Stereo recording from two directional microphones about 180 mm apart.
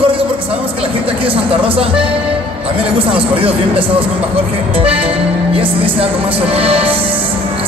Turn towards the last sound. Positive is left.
turn(degrees=-30)  # may be behind; listen again after turning